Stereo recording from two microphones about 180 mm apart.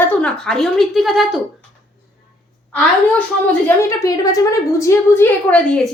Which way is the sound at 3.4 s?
15° left (ahead or behind).